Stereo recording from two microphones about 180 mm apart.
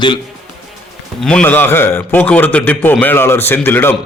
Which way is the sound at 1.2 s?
5° left (ahead or behind).